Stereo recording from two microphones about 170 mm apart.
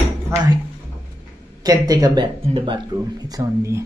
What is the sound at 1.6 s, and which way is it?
Speech, 20° right (ahead or behind).